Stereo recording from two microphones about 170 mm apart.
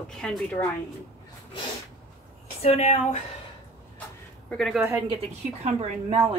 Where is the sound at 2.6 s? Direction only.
40° left (ahead or behind).